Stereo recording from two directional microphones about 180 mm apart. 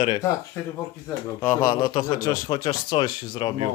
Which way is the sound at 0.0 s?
25° left (ahead or behind).